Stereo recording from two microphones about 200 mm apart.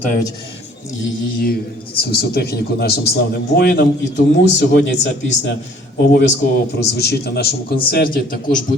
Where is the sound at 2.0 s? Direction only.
50° left (ahead or behind).